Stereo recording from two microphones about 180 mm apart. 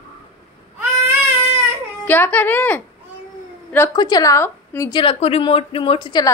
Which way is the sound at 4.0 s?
20° left (ahead or behind).